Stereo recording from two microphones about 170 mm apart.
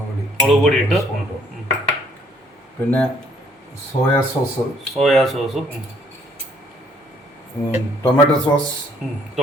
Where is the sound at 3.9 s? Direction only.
35° left (ahead or behind).